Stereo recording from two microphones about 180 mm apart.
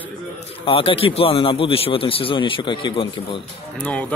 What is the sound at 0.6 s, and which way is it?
Speech, 30° left (ahead or behind).